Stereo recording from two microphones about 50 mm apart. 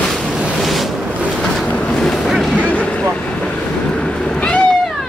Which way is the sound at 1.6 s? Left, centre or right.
Left.